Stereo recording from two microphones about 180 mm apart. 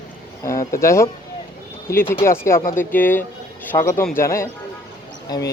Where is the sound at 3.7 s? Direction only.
25° left (ahead or behind).